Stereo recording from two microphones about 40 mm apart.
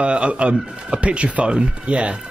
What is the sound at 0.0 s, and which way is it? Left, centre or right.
Speech, right.